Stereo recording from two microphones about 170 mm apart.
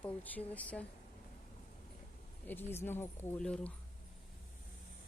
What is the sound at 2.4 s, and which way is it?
Speech, 10° left (ahead or behind).